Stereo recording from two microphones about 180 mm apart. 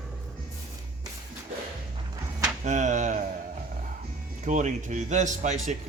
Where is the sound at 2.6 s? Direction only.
40° right (ahead or behind).